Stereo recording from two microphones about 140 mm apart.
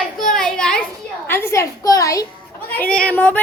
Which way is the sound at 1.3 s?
15° left (ahead or behind).